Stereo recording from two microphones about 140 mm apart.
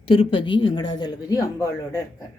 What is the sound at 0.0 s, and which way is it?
Speech, 40° left (ahead or behind).